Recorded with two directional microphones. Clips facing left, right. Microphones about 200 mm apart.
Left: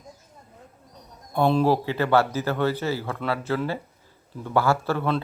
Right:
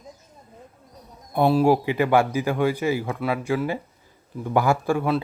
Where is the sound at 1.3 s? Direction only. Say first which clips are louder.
Right 2 dB; 10° right (ahead or behind).